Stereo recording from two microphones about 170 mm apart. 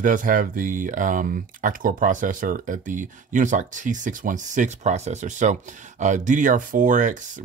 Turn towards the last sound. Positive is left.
turn(degrees=-50)  # may be behind; listen again after turning